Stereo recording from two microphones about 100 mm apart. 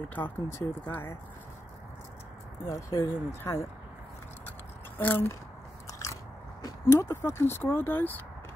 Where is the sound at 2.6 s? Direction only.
35° left (ahead or behind).